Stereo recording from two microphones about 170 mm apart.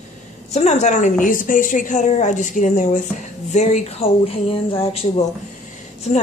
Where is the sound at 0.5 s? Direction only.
40° left (ahead or behind).